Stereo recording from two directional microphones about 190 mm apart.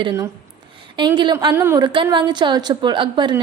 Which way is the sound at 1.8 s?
25° right (ahead or behind).